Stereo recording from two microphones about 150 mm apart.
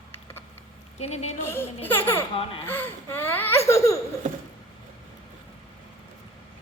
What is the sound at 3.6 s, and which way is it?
Laughter, 20° left (ahead or behind).